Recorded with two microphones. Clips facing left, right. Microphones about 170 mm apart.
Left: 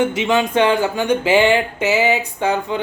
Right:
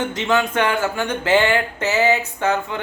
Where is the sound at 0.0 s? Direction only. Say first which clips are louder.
Left 3 dB; 10° left (ahead or behind).